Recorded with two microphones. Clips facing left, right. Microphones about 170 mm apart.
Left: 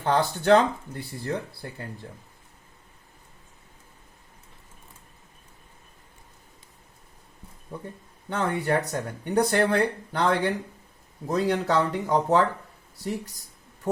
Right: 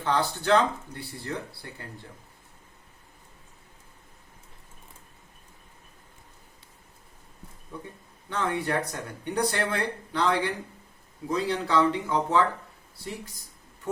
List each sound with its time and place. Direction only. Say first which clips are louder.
0.0 s speech: left 3 dB; 45° left (ahead or behind)
8.3 s speech: left 3 dB; 40° left (ahead or behind)